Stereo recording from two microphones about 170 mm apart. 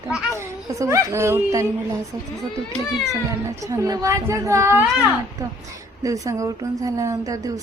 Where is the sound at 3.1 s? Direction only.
20° right (ahead or behind).